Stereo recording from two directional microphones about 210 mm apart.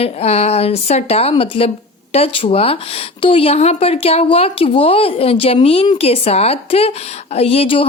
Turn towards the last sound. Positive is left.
turn(degrees=25)  # may be behind; listen again after turning